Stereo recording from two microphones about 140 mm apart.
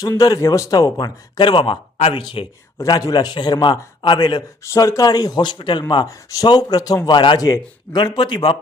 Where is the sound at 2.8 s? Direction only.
25° left (ahead or behind).